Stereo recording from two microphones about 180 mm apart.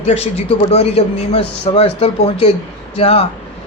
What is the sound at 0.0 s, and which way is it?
A man's voice, 35° left (ahead or behind).